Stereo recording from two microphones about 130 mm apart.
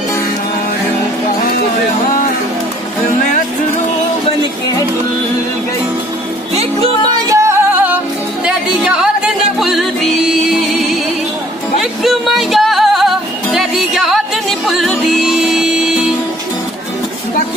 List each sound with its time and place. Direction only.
6.5 s music: 55° right (ahead or behind)
7.2 s music: 25° right (ahead or behind); by 16.0 s 5° right (ahead or behind)